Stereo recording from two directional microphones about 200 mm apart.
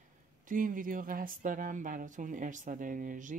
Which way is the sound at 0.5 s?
40° right (ahead or behind).